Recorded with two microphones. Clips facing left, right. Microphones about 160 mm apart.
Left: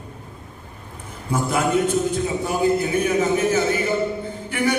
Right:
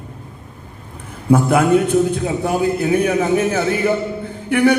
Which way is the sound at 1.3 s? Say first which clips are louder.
Right 8 dB; 60° right (ahead or behind).